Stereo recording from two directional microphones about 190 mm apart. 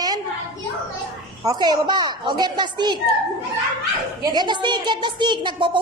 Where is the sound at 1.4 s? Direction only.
20° right (ahead or behind).